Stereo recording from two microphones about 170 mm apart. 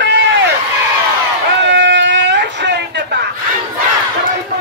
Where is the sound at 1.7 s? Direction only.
90° right.